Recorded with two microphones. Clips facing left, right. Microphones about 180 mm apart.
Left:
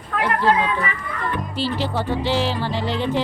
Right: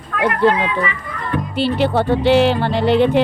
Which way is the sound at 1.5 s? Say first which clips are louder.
Right 9 dB; 60° right (ahead or behind).